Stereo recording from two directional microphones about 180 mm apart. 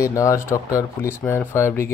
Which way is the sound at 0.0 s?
15° left (ahead or behind).